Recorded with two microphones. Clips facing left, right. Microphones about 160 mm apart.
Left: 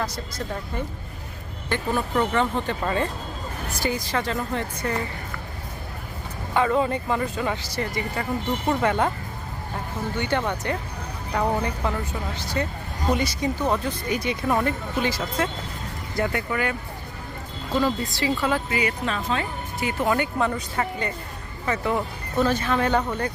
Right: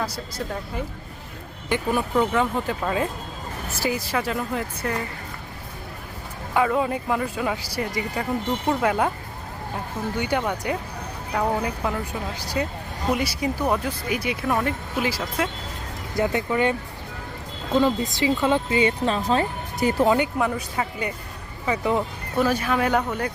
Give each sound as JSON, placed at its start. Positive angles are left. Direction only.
{"t": 0.0, "sound": "speech", "side_deg": -10}
{"t": 6.5, "sound": "speech", "side_deg": -5}
{"t": 10.2, "sound": "speech", "side_deg": -10}
{"t": 16.1, "sound": "speech", "side_deg": -20}
{"t": 17.7, "sound": "speech", "side_deg": -20}
{"t": 20.1, "sound": "speech", "side_deg": -15}